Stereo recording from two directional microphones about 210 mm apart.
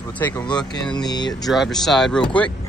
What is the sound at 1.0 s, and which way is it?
Speech, 20° left (ahead or behind).